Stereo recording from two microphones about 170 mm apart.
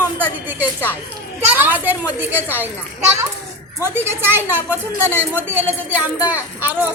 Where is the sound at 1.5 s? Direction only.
10° right (ahead or behind).